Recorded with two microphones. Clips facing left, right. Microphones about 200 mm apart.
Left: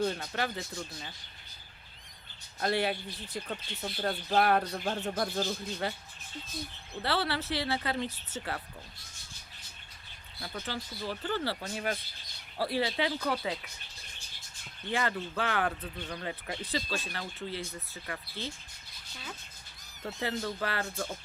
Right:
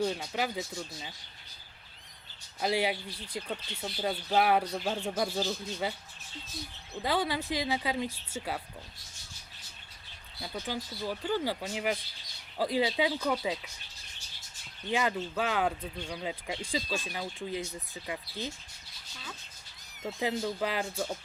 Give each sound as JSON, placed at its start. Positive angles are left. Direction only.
{"t": 0.0, "sound": "speech", "side_deg": -10}
{"t": 2.6, "sound": "speech", "side_deg": -10}
{"t": 7.0, "sound": "speech", "side_deg": -15}
{"t": 10.4, "sound": "speech", "side_deg": -15}
{"t": 14.8, "sound": "speech", "side_deg": -15}
{"t": 20.0, "sound": "speech", "side_deg": -10}